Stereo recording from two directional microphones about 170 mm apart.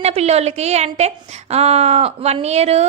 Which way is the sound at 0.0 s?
40° right (ahead or behind).